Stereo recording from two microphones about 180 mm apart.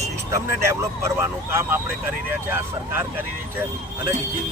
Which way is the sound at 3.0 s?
10° right (ahead or behind).